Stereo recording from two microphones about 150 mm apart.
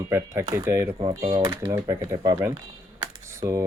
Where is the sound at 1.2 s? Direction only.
30° right (ahead or behind).